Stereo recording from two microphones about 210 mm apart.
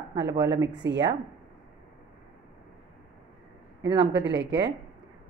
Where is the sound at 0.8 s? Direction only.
60° right (ahead or behind).